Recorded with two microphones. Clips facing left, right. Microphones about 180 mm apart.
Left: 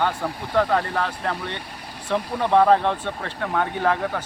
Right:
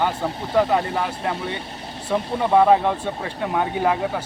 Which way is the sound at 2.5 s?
10° right (ahead or behind).